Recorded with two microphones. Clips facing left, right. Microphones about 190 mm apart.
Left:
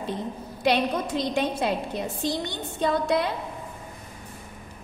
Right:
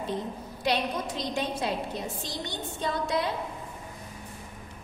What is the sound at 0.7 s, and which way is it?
A woman's voice, 60° left (ahead or behind).